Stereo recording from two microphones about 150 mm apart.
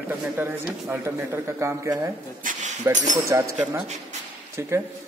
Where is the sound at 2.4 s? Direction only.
65° right (ahead or behind).